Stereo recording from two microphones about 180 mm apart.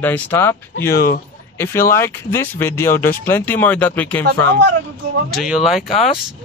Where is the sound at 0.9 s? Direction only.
55° left (ahead or behind).